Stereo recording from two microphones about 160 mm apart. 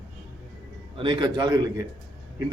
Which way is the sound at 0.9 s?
30° right (ahead or behind).